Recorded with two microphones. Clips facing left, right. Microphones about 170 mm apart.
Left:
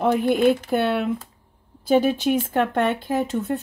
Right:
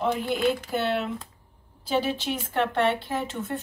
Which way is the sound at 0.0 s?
50° left (ahead or behind).